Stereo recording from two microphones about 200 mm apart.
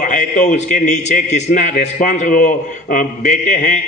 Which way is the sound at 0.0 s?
40° left (ahead or behind).